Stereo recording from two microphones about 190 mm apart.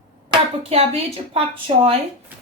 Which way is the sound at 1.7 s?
25° right (ahead or behind).